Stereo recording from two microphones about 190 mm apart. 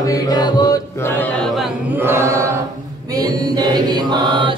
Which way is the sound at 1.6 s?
10° right (ahead or behind).